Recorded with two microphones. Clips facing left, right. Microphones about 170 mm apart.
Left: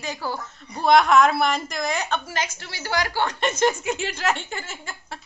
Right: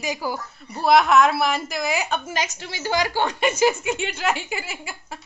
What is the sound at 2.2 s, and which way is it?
A woman's voice, 20° right (ahead or behind).